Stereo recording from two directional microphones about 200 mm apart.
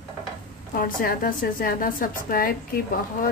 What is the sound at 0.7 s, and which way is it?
A woman's voice, 45° left (ahead or behind).